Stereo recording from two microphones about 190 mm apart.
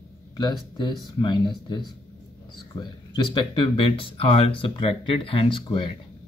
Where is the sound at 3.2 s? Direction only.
25° left (ahead or behind).